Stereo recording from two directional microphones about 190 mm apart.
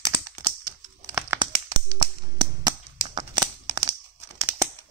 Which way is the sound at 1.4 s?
20° right (ahead or behind).